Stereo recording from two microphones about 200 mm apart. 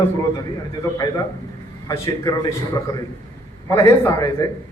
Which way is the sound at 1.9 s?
15° left (ahead or behind).